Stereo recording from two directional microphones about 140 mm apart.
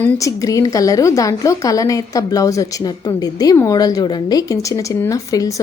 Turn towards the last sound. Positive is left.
turn(degrees=25)  # may be behind; listen again after turning